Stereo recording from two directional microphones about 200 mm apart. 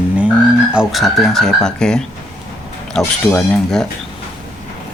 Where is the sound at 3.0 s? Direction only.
5° left (ahead or behind).